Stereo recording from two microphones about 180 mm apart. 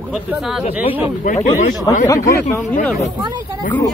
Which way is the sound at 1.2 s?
45° left (ahead or behind).